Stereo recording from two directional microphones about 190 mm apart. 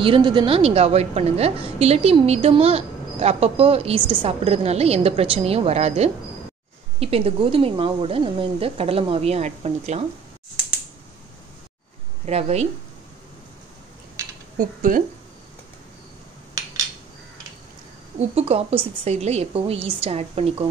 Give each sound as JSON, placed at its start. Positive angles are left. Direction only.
{"t": 0.0, "sound": "a woman's voice", "side_deg": -25}
{"t": 12.3, "sound": "a woman's voice", "side_deg": -35}
{"t": 14.6, "sound": "speech", "side_deg": -45}
{"t": 18.3, "sound": "a woman's voice", "side_deg": -35}